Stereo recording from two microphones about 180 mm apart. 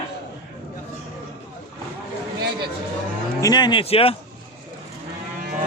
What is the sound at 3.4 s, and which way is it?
Speech, 25° left (ahead or behind).